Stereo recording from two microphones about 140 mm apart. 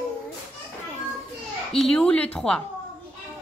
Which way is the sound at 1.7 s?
5° left (ahead or behind).